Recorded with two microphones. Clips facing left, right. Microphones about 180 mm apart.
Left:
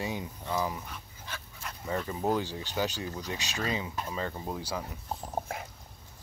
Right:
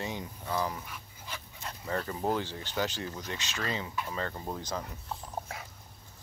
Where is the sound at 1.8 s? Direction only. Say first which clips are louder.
Left 1 dB; 15° left (ahead or behind).